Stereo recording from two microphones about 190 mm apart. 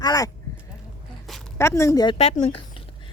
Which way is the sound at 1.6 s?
15° left (ahead or behind).